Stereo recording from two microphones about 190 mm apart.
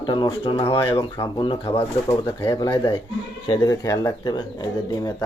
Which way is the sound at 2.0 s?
15° left (ahead or behind).